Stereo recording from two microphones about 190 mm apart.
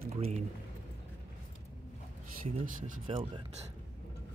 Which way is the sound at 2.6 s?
45° right (ahead or behind).